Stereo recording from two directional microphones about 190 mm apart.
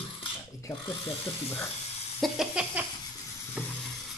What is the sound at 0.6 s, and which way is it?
Speech, 20° left (ahead or behind).